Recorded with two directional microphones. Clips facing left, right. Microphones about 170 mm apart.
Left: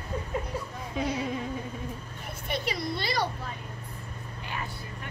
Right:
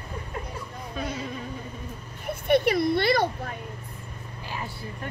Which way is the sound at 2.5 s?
60° right (ahead or behind).